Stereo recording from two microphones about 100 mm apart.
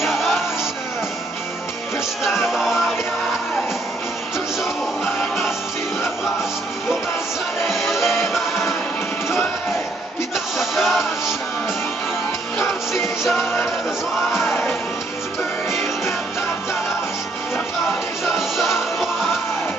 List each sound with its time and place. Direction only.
0.0 s music: centre (ahead or behind)
2.2 s music: centre (ahead or behind)
7.6 s music: centre (ahead or behind)
10.3 s music: centre (ahead or behind)
12.5 s music: 25° left (ahead or behind)
18.2 s music: centre (ahead or behind)